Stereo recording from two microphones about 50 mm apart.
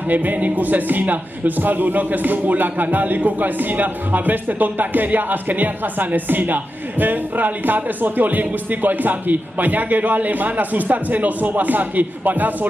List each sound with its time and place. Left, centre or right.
0.1 s a man's voice: right